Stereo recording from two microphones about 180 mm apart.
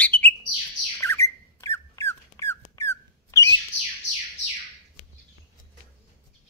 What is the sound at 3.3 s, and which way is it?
Bird, 20° left (ahead or behind).